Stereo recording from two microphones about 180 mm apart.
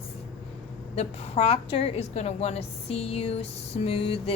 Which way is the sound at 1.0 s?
35° left (ahead or behind).